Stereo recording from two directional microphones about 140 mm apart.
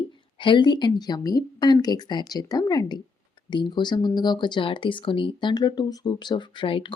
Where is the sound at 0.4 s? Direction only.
35° left (ahead or behind).